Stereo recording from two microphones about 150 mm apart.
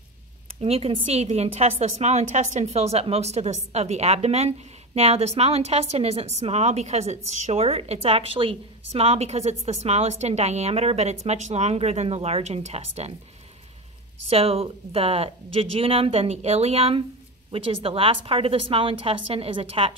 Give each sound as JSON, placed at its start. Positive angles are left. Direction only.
{"t": 0.6, "sound": "a woman's voice", "side_deg": -40}
{"t": 14.3, "sound": "speech", "side_deg": -40}